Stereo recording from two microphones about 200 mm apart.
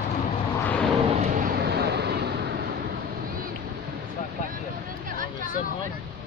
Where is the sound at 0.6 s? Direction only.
5° left (ahead or behind).